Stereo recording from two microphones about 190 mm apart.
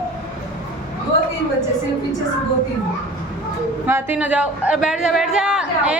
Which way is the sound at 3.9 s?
10° right (ahead or behind).